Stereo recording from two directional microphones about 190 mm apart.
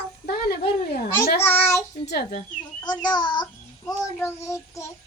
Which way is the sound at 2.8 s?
20° left (ahead or behind).